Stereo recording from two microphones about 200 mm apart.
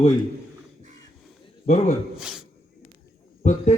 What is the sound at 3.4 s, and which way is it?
Speech, 35° left (ahead or behind).